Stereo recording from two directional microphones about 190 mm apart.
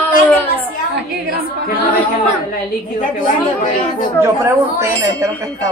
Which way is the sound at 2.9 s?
45° left (ahead or behind).